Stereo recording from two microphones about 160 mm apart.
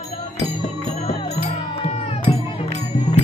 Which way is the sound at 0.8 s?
40° left (ahead or behind).